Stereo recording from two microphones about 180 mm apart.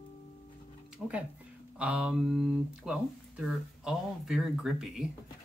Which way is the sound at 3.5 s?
Centre (ahead or behind).